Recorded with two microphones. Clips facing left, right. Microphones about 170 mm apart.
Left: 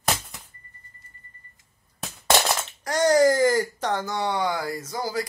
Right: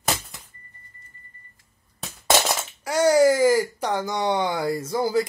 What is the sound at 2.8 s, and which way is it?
Speech, 10° right (ahead or behind).